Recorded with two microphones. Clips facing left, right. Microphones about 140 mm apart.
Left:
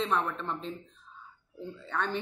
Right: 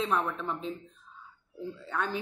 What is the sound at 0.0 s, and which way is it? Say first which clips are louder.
Speech: even; 5° right (ahead or behind).